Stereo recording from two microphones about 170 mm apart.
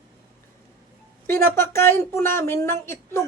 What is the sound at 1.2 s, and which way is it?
A woman's voice, 15° left (ahead or behind).